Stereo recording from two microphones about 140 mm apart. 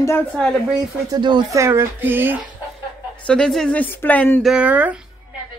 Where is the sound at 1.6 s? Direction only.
20° right (ahead or behind).